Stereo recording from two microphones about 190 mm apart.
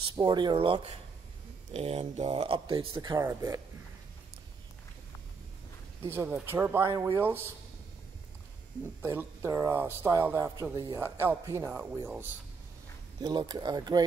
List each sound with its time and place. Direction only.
0.0 s speech: 25° right (ahead or behind)
6.0 s speech: 10° right (ahead or behind)
9.0 s speech: 10° right (ahead or behind)
13.2 s speech: 20° right (ahead or behind)